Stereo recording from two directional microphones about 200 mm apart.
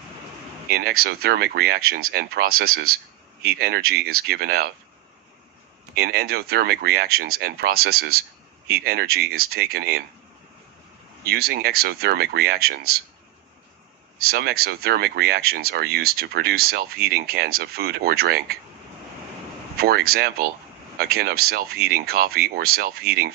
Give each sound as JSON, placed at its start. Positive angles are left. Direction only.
{"t": 0.7, "sound": "speech", "side_deg": -50}
{"t": 5.9, "sound": "speech", "side_deg": -50}
{"t": 11.2, "sound": "speech", "side_deg": -50}
{"t": 14.1, "sound": "speech", "side_deg": -50}
{"t": 19.8, "sound": "speech", "side_deg": -50}